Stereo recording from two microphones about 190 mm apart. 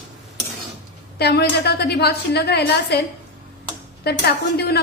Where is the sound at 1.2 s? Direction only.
60° left (ahead or behind).